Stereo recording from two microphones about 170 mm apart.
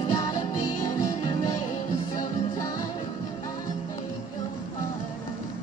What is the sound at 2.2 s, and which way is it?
Music, 25° left (ahead or behind).